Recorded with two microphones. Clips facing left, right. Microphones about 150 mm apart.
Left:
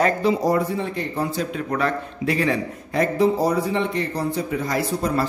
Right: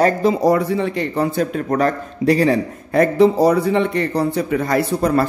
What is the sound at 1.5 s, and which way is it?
A man's voice, 45° right (ahead or behind).